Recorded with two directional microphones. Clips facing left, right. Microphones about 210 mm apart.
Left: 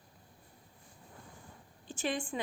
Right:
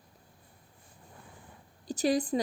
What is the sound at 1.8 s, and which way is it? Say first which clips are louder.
Speech: right 8 dB; 40° right (ahead or behind).